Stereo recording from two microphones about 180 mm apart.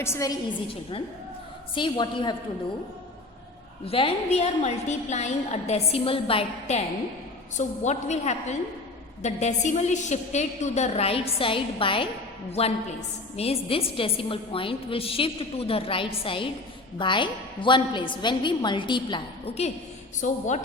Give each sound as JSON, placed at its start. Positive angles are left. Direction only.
{"t": 0.0, "sound": "a woman's voice", "side_deg": 15}
{"t": 1.7, "sound": "a woman's voice", "side_deg": 25}
{"t": 3.8, "sound": "a woman's voice", "side_deg": 30}